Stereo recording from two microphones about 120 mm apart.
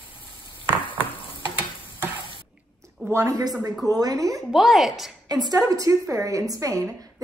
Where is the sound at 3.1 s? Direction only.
25° right (ahead or behind).